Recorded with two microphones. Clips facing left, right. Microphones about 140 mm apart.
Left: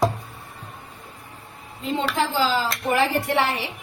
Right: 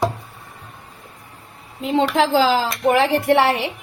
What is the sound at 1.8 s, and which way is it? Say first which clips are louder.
Speech: right 6 dB; 90° right.